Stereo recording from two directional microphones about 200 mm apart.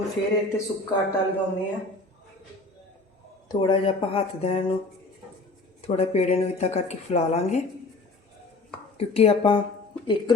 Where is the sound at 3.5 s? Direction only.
20° left (ahead or behind).